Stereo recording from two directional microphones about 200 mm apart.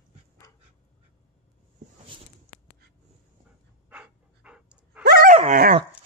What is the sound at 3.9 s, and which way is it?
Dog, 5° right (ahead or behind).